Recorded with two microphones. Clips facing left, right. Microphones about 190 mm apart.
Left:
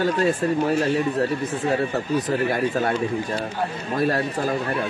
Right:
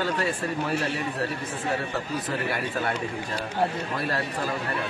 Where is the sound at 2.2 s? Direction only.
40° left (ahead or behind).